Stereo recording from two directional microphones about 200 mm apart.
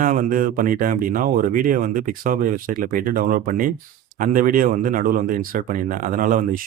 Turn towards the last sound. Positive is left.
turn(degrees=-45)  # may be behind; listen again after turning